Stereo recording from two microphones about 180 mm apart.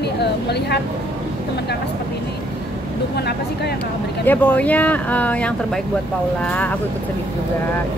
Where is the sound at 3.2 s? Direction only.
65° left (ahead or behind).